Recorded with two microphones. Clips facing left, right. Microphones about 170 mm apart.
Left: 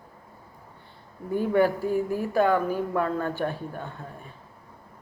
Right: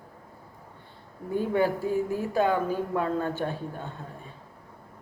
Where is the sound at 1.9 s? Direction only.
15° left (ahead or behind).